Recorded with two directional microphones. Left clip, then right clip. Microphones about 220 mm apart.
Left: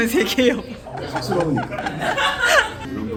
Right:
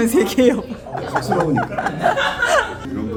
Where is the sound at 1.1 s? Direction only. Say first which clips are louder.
Right 3 dB; 30° right (ahead or behind).